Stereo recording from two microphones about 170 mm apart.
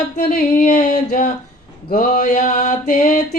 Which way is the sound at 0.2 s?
50° left (ahead or behind).